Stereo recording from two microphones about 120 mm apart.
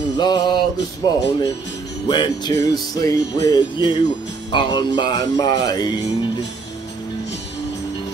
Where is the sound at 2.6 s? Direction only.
30° left (ahead or behind).